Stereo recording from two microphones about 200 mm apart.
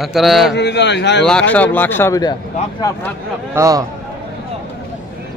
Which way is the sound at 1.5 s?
10° left (ahead or behind).